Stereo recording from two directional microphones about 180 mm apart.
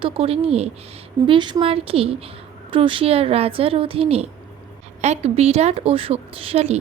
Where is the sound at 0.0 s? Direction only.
30° right (ahead or behind).